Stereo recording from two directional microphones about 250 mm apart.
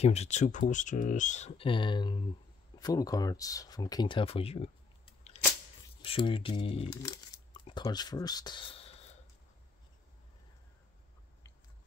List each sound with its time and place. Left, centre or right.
0.0 s speech: left
6.0 s speech: left